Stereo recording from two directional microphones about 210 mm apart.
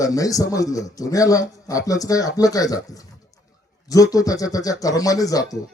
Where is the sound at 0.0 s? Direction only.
15° left (ahead or behind).